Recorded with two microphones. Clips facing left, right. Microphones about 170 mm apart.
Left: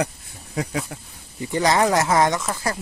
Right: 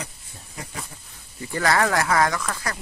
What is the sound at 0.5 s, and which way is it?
Speech, 75° left (ahead or behind).